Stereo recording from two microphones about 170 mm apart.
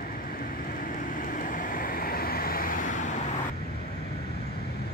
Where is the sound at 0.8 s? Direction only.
50° left (ahead or behind).